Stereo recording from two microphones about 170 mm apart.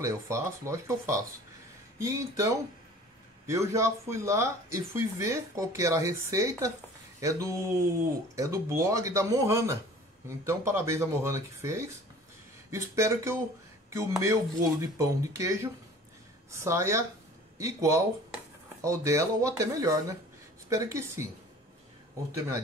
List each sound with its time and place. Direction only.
0.0 s speech: 15° right (ahead or behind)